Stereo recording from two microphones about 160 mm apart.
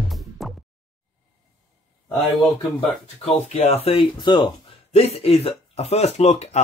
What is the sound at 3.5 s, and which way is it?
Speech, 40° left (ahead or behind).